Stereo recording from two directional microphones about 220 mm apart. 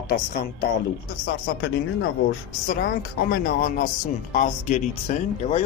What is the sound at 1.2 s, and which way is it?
Speech, 55° left (ahead or behind).